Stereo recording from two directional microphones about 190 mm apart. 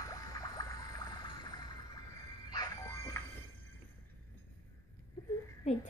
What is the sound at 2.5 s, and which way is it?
Music, 20° left (ahead or behind).